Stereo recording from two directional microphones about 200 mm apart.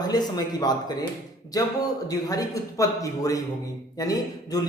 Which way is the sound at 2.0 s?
15° left (ahead or behind).